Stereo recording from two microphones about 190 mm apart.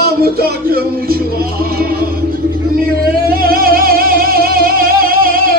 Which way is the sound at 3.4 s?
50° right (ahead or behind).